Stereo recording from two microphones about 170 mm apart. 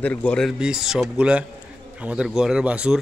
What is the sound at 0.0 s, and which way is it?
A man's voice, 10° left (ahead or behind).